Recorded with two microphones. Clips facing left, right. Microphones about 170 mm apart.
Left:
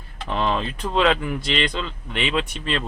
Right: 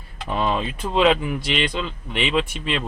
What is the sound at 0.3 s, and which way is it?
Speech, 5° right (ahead or behind).